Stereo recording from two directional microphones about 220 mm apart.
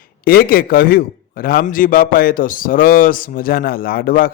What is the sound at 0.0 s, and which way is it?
A man's voice, 40° left (ahead or behind).